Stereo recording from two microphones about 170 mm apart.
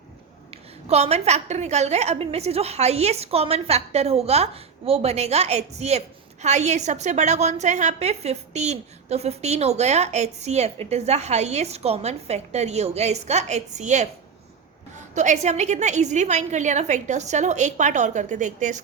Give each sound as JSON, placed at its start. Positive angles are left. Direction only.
{"t": 0.5, "sound": "a woman's voice", "side_deg": -40}
{"t": 15.1, "sound": "a woman's voice", "side_deg": -45}